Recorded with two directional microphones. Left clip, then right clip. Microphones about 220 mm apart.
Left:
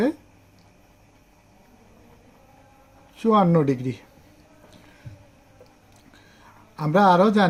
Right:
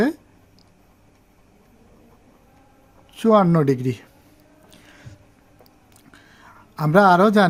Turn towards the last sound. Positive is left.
turn(degrees=-45)  # may be behind; listen again after turning